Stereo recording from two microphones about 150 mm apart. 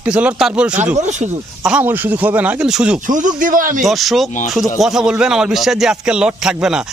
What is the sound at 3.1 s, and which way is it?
Speech, 60° right (ahead or behind).